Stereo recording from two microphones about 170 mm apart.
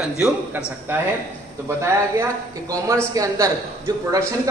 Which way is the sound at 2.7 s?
20° right (ahead or behind).